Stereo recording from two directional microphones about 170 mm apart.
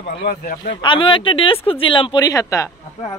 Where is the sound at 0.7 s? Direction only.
30° left (ahead or behind).